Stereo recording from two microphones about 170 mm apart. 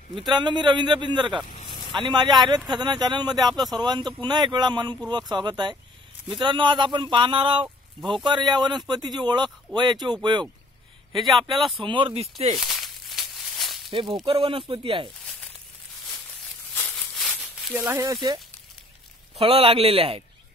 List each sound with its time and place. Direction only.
0.3 s speech: 25° right (ahead or behind)
1.5 s a sound: 30° left (ahead or behind)
2.0 s speech: 25° right (ahead or behind)
11.5 s speech: centre (ahead or behind)
11.8 s a man's voice: 30° right (ahead or behind)
12.5 s a sound: centre (ahead or behind)
13.9 s a man's voice: 30° right (ahead or behind)
16.7 s a sound: 5° left (ahead or behind)
17.7 s speech: 15° right (ahead or behind)
19.3 s a man's voice: 35° right (ahead or behind)